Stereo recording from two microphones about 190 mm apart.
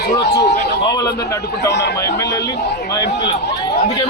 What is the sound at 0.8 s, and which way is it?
A man's voice, 25° left (ahead or behind).